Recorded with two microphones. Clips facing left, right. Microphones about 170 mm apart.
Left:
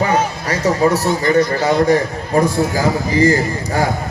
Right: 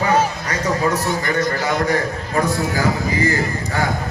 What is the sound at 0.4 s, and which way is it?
A man's voice, 30° left (ahead or behind).